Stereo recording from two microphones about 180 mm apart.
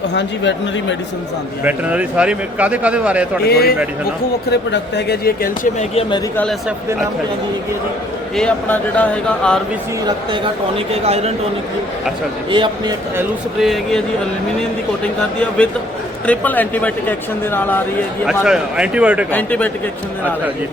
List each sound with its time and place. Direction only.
0.1 s speech: 80° left
1.6 s a man's voice: 10° right (ahead or behind)
3.4 s a man's voice: 60° left (ahead or behind)
5.9 s speech: 30° left (ahead or behind)
6.3 s a man's voice: 5° left (ahead or behind)
8.4 s speech: 5° left (ahead or behind)
10.3 s speech: 30° right (ahead or behind)
12.5 s a man's voice: 25° right (ahead or behind)
13.6 s a man's voice: centre (ahead or behind)
15.4 s a man's voice: 5° left (ahead or behind)
18.3 s a man's voice: 5° right (ahead or behind)
19.3 s speech: 10° left (ahead or behind)